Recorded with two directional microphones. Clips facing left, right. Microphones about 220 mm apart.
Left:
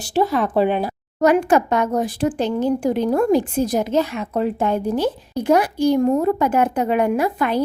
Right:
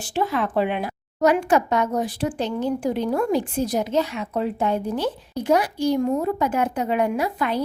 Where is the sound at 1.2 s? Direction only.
50° left (ahead or behind).